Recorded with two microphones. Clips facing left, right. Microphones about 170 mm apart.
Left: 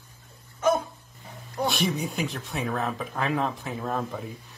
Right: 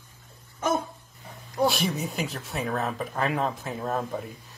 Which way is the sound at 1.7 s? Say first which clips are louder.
Left 1 dB; centre (ahead or behind).